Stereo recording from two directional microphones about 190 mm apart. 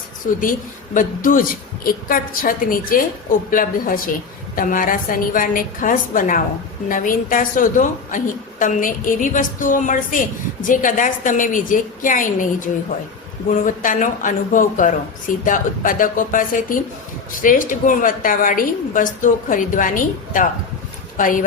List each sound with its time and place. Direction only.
0.2 s a woman's voice: 40° left (ahead or behind)